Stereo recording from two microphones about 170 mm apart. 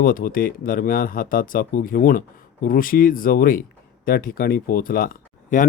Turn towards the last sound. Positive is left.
turn(degrees=50)  # may be behind; listen again after turning